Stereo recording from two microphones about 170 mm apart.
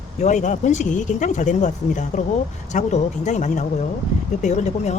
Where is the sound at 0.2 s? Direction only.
45° left (ahead or behind).